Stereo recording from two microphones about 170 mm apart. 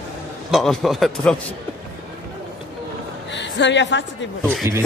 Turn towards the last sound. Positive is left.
turn(degrees=-15)  # may be behind; listen again after turning